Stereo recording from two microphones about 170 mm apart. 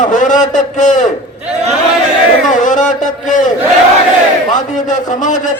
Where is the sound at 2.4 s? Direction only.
50° left (ahead or behind).